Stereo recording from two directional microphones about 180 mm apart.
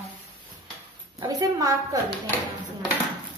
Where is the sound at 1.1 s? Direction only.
20° right (ahead or behind).